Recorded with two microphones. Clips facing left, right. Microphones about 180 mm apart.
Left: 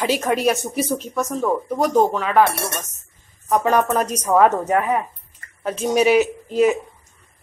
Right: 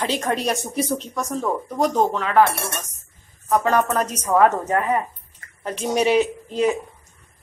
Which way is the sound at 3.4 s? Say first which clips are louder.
Left 1 dB; 15° left (ahead or behind).